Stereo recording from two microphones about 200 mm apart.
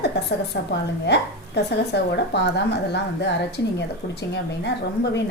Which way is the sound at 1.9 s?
55° left (ahead or behind).